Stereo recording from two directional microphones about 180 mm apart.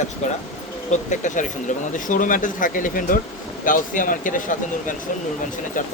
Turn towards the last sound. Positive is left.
turn(degrees=45)  # may be behind; listen again after turning